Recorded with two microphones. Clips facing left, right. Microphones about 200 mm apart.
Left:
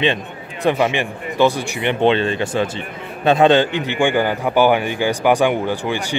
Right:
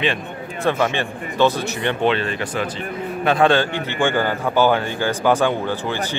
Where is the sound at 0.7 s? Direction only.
15° left (ahead or behind).